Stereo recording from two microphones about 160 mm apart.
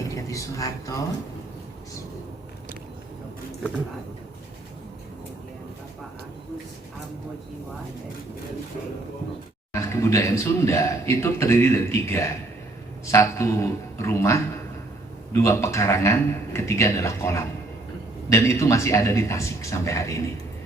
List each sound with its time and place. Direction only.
0.2 s speech: 20° left (ahead or behind)
9.9 s a man's voice: 15° left (ahead or behind)